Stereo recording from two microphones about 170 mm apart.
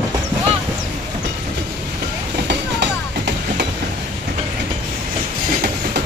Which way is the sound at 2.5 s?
90° right.